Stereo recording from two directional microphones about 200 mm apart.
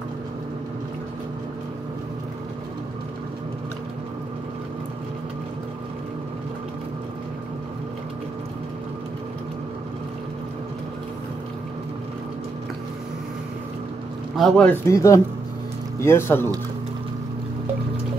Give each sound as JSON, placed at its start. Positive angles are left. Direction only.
{"t": 14.3, "sound": "a man's voice", "side_deg": 0}
{"t": 14.9, "sound": "speech", "side_deg": 15}